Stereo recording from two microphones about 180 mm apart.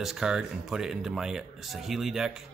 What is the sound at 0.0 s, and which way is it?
Speech, 5° right (ahead or behind).